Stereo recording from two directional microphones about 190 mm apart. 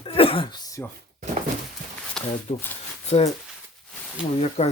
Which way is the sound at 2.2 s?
5° left (ahead or behind).